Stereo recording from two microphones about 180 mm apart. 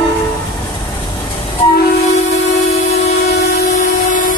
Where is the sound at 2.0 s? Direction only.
40° left (ahead or behind).